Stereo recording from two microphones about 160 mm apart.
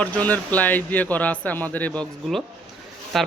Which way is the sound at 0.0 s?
10° left (ahead or behind).